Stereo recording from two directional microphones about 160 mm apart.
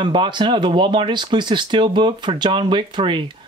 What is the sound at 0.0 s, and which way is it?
Speech, 30° right (ahead or behind).